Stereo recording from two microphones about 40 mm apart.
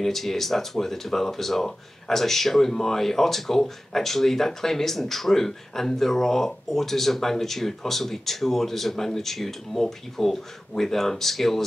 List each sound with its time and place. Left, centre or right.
0.0 s speech: centre